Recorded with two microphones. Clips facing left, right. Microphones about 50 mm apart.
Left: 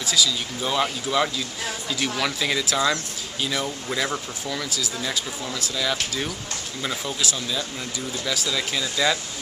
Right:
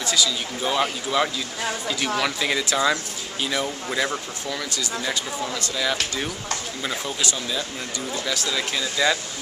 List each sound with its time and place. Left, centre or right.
0.0 s speech: centre